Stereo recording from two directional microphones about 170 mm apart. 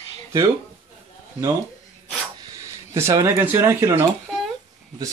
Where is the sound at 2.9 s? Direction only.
15° right (ahead or behind).